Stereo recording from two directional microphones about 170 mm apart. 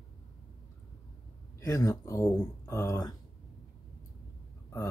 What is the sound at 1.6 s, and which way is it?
Speech, 20° left (ahead or behind).